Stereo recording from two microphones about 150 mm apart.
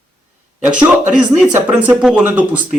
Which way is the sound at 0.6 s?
10° right (ahead or behind).